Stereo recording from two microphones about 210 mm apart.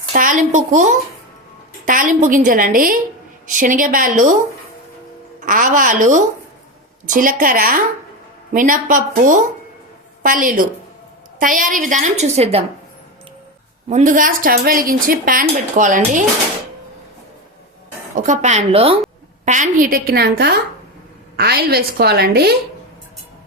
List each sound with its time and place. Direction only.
0.1 s a child's voice: 40° right (ahead or behind)
5.5 s speech: 40° right (ahead or behind)
13.9 s speech: 40° right (ahead or behind)
18.1 s a woman's voice: 35° right (ahead or behind)